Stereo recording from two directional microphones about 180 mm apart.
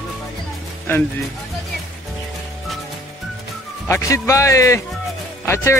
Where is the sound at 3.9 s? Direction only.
15° left (ahead or behind).